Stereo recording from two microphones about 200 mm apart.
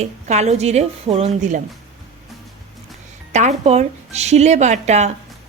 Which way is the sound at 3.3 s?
35° right (ahead or behind).